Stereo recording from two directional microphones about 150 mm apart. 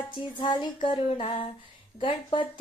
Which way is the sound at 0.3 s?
30° left (ahead or behind).